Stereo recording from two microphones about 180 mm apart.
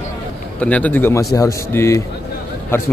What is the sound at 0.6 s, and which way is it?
A man's voice, 10° left (ahead or behind).